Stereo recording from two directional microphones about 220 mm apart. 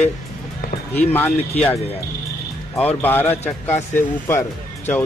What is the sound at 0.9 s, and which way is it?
Speech, 10° left (ahead or behind).